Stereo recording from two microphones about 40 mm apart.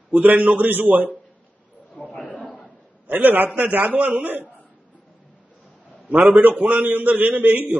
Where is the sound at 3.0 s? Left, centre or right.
Right.